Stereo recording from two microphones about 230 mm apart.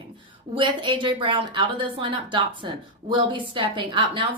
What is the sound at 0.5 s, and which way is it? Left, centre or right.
A woman's voice, right.